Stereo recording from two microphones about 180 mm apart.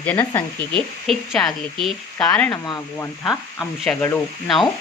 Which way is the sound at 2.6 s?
20° left (ahead or behind).